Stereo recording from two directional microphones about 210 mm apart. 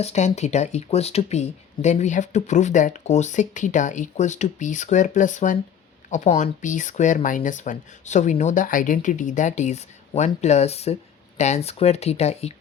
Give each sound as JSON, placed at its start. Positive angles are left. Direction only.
{"t": 0.0, "sound": "speech", "side_deg": 35}